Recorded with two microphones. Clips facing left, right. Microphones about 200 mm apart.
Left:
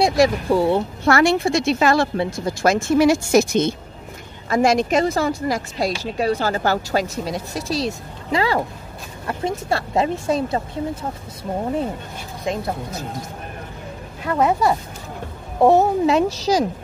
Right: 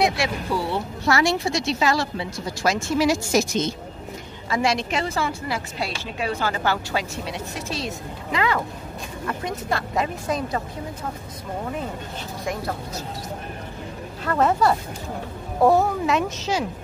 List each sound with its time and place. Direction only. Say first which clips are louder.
0.0 s a woman's voice: left 6 dB; 40° left (ahead or behind)
12.5 s a woman's voice: left 5 dB; 20° left (ahead or behind)
14.2 s speech: left 1 dB; 10° left (ahead or behind)
15.6 s speech: left 4 dB; 25° left (ahead or behind)